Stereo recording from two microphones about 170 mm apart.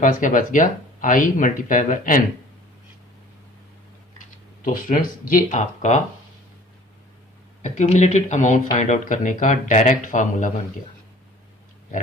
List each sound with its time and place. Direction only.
0.0 s speech: 50° left (ahead or behind)
4.6 s speech: 55° left (ahead or behind)
7.6 s speech: 45° left (ahead or behind)